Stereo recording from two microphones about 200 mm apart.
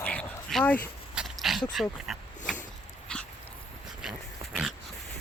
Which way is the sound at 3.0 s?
5° left (ahead or behind).